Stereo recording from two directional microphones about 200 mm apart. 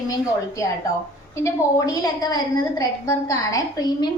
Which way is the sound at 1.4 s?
15° left (ahead or behind).